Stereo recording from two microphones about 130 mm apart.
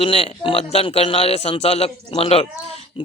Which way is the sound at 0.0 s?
45° left (ahead or behind).